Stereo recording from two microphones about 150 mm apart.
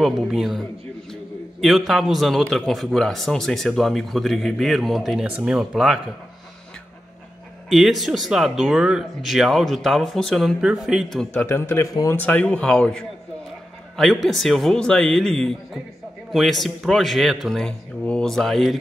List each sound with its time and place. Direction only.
0.0 s a man's voice: centre (ahead or behind)
7.7 s a man's voice: centre (ahead or behind)
11.4 s speech: 15° left (ahead or behind)
12.2 s a man's voice: 10° left (ahead or behind)